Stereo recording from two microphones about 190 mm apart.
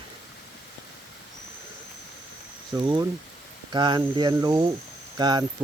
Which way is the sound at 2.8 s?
20° right (ahead or behind).